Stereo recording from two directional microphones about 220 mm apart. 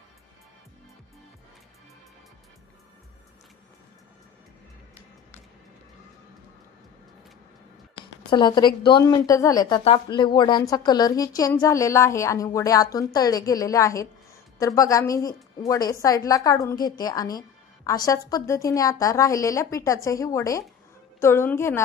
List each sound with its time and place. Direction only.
8.0 s a woman's voice: 20° left (ahead or behind)